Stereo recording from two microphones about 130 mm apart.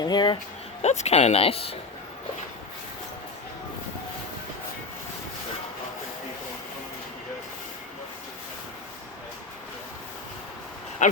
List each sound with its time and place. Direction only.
0.0 s speech: 35° left (ahead or behind)
0.8 s speech: 60° left (ahead or behind)
11.0 s a sound: 70° left (ahead or behind)